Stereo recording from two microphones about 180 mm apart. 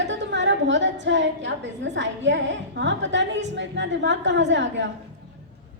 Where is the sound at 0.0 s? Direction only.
80° right.